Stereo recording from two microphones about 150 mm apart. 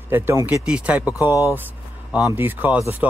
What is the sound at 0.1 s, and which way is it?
Speech, 15° right (ahead or behind).